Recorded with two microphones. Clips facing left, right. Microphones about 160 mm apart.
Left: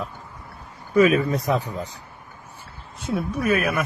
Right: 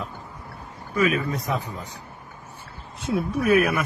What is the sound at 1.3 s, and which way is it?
Speech, 30° left (ahead or behind).